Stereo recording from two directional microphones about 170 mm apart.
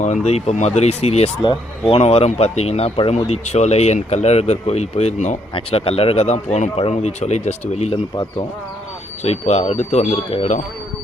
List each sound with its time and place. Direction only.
0.3 s speech: 40° left (ahead or behind)
8.1 s speech: 25° left (ahead or behind)
9.2 s speech: 40° left (ahead or behind)